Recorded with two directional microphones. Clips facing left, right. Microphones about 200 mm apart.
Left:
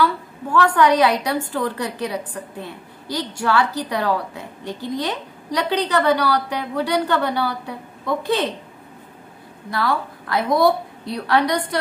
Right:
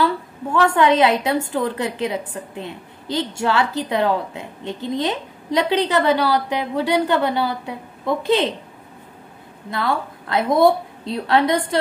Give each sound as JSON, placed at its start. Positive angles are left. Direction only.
{"t": 0.0, "sound": "a woman's voice", "side_deg": -25}
{"t": 9.7, "sound": "a woman's voice", "side_deg": -25}